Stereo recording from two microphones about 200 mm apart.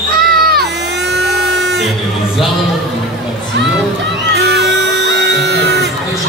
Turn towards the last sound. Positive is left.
turn(degrees=-55)  # may be behind; listen again after turning